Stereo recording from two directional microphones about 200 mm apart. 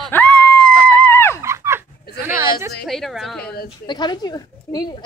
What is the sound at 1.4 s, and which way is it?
Dog, 15° right (ahead or behind).